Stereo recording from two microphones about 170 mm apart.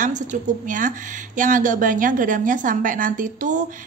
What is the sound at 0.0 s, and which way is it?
A woman's voice, 50° right (ahead or behind).